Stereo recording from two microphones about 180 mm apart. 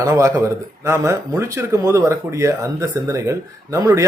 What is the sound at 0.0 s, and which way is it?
Speech, 15° right (ahead or behind).